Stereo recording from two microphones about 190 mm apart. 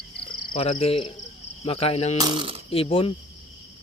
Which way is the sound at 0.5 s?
30° left (ahead or behind).